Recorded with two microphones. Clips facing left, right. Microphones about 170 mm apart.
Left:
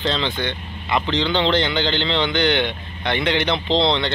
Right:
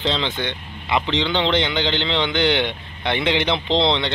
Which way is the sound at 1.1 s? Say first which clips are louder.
Left 2 dB; 20° right (ahead or behind).